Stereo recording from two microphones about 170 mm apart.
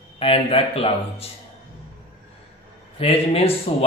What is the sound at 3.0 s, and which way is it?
Speech, 35° left (ahead or behind).